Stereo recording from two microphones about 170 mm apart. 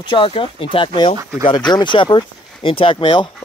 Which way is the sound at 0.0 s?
30° left (ahead or behind).